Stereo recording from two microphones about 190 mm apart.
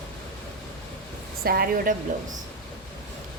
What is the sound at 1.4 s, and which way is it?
Speech, 55° right (ahead or behind).